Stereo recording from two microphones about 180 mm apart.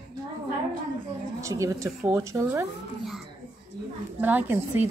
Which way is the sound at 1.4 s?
15° right (ahead or behind).